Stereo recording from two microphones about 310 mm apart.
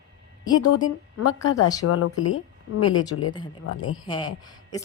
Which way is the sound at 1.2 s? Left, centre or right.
Left.